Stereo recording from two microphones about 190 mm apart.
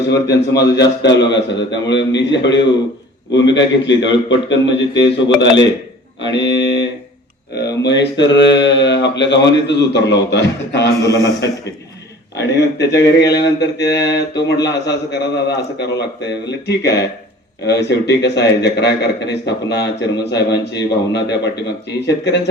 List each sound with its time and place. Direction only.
0.3 s a man's voice: 65° left (ahead or behind)
12.4 s mantra: 65° left (ahead or behind)